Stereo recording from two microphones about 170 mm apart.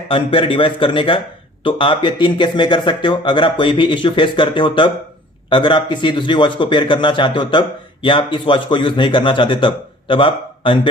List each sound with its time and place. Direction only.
0.1 s a man's voice: 30° left (ahead or behind)